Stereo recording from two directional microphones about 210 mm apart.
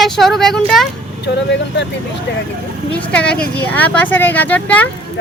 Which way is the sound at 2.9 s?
5° left (ahead or behind).